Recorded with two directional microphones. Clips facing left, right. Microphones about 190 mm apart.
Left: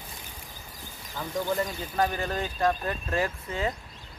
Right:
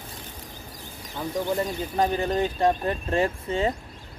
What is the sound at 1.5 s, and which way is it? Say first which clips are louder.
Speech: right 3 dB; 20° right (ahead or behind).